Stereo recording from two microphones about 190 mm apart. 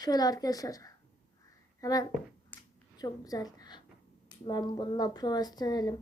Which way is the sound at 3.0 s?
20° left (ahead or behind).